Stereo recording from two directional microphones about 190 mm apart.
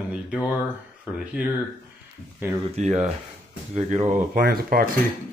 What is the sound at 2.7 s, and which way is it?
Speech, 35° right (ahead or behind).